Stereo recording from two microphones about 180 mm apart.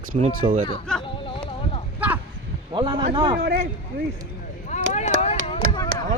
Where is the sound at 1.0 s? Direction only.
30° left (ahead or behind).